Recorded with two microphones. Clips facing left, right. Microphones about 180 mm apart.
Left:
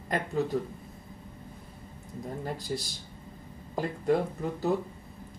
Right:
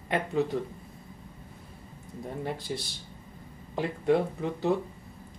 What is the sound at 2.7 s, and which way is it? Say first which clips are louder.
Speech: left 1 dB; 5° right (ahead or behind).